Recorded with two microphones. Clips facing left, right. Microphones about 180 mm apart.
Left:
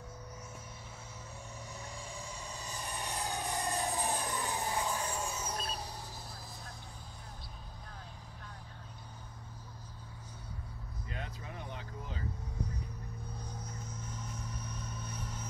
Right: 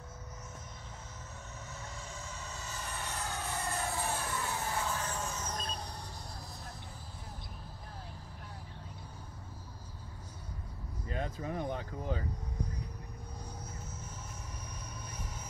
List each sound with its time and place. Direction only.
1.7 s vehicle: 15° left (ahead or behind)
11.1 s speech: 45° right (ahead or behind)
13.4 s vehicle: 10° right (ahead or behind)